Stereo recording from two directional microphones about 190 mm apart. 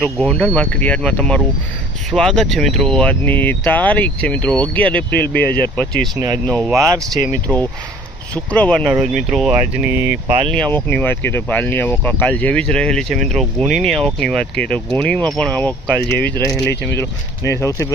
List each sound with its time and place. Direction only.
0.0 s speech: centre (ahead or behind)
5.1 s speech: 55° left (ahead or behind)
5.7 s speech: 5° left (ahead or behind)
6.1 s speech: 20° right (ahead or behind)
6.5 s speech: centre (ahead or behind)
6.7 s speech: 15° right (ahead or behind)
7.4 s speech: 10° left (ahead or behind); by 10.2 s 10° right (ahead or behind)
10.5 s speech: 5° left (ahead or behind)